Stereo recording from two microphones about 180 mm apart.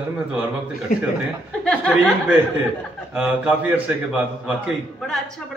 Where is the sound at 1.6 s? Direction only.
5° left (ahead or behind).